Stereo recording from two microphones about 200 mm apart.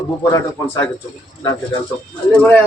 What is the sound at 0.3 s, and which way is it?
Speech, 15° left (ahead or behind).